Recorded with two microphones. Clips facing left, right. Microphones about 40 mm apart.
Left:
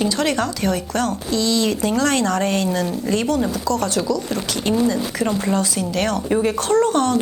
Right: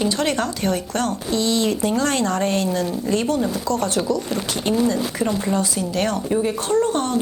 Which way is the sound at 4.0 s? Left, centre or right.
Right.